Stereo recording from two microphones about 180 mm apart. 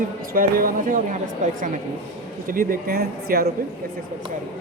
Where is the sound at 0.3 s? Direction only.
50° right (ahead or behind).